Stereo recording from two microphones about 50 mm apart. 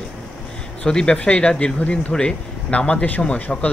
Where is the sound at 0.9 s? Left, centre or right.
Centre.